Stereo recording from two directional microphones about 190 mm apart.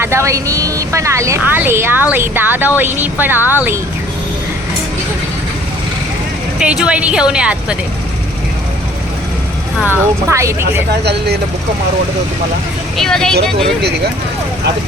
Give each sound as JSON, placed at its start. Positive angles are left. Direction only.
{"t": 0.0, "sound": "speech", "side_deg": -15}
{"t": 6.6, "sound": "a woman's voice", "side_deg": -5}
{"t": 9.8, "sound": "speech", "side_deg": -10}
{"t": 11.0, "sound": "speech", "side_deg": -60}
{"t": 13.0, "sound": "a woman's voice", "side_deg": 5}